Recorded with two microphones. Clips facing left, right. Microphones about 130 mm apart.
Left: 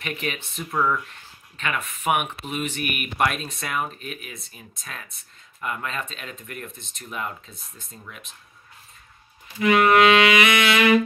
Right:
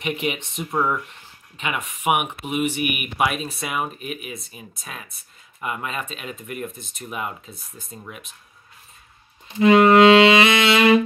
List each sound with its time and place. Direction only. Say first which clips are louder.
0.0 s speech: right 5 dB; 20° right (ahead or behind)
9.5 s speech: right 4 dB; 25° right (ahead or behind)